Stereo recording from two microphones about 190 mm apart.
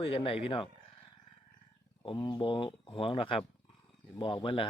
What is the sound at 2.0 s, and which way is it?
Speech, 25° left (ahead or behind).